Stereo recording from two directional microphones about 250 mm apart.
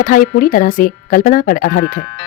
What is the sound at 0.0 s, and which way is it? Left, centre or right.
Speech, left.